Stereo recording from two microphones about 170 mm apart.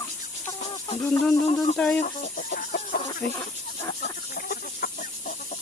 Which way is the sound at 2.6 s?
65° left (ahead or behind).